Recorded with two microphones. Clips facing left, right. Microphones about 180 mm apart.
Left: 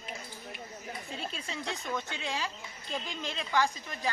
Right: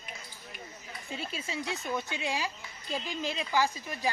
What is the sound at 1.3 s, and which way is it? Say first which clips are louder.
Speech: right 2 dB; 5° right (ahead or behind).